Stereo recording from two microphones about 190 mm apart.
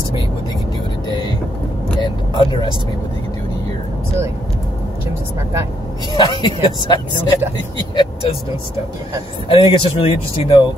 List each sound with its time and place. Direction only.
2.0 s vehicle: 25° left (ahead or behind)
6.1 s speech: 25° left (ahead or behind)
9.5 s speech: 25° left (ahead or behind)